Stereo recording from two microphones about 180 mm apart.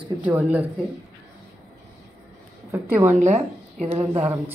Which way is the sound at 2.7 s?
10° right (ahead or behind).